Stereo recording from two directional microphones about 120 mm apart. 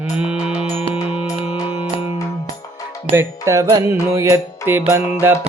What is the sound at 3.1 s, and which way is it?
Music, 25° right (ahead or behind).